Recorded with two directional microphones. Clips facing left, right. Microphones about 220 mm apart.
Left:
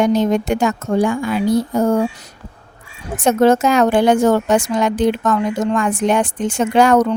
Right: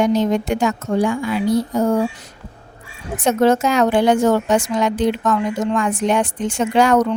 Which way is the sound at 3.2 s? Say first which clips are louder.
Left 2 dB; 50° left (ahead or behind).